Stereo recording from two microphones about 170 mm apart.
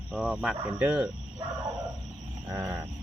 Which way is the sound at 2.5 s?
15° right (ahead or behind).